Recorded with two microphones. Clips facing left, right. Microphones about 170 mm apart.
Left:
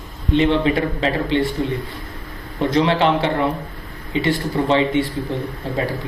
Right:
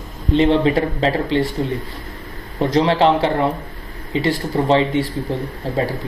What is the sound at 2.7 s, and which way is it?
Speech, 35° right (ahead or behind).